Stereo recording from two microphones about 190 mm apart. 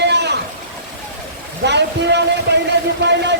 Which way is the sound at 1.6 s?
65° right (ahead or behind).